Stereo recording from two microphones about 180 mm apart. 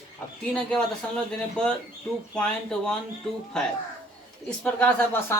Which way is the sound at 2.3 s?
5° left (ahead or behind).